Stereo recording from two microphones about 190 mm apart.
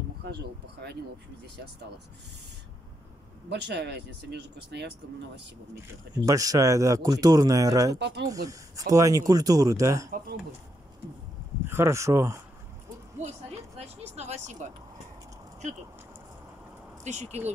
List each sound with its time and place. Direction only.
3.4 s speech: 60° right (ahead or behind)
6.2 s a man's voice: 20° right (ahead or behind)
8.0 s speech: 60° right (ahead or behind)
8.3 s a man's voice: 15° right (ahead or behind)
11.6 s speech: 15° right (ahead or behind)
13.7 s speech: 35° right (ahead or behind)
17.0 s speech: 40° right (ahead or behind)